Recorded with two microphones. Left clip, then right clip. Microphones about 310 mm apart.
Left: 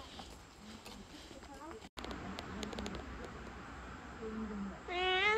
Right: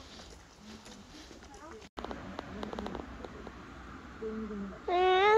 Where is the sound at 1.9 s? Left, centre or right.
Centre.